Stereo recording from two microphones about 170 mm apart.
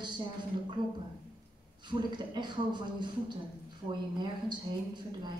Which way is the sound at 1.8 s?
25° right (ahead or behind).